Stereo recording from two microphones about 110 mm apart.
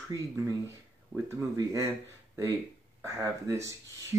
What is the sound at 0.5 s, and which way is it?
Speech, 25° right (ahead or behind).